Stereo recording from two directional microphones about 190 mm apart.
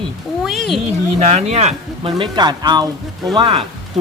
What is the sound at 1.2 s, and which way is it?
Speech, 35° right (ahead or behind).